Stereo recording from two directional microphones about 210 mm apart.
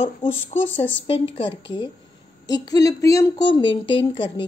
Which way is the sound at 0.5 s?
35° left (ahead or behind).